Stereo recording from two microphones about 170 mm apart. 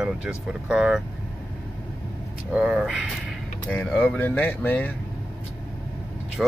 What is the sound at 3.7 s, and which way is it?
Speech, 10° left (ahead or behind).